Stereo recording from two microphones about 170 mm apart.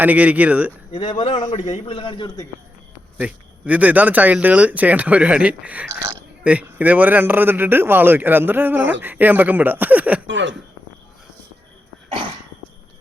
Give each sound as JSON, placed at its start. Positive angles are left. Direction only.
{"t": 0.0, "sound": "speech", "side_deg": -10}
{"t": 1.3, "sound": "a man's voice", "side_deg": 45}
{"t": 3.2, "sound": "speech", "side_deg": -10}
{"t": 10.2, "sound": "speech", "side_deg": -90}